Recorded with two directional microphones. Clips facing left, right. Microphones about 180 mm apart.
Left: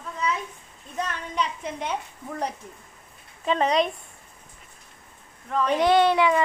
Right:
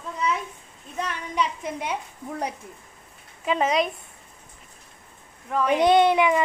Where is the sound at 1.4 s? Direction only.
10° right (ahead or behind).